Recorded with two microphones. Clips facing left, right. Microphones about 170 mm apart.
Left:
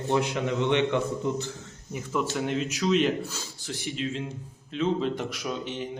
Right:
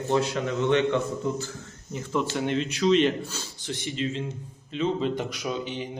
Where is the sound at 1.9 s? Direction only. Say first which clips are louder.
Right 1 dB; 5° left (ahead or behind).